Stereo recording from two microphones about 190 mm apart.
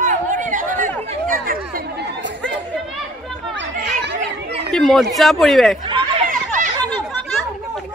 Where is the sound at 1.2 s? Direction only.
50° right (ahead or behind).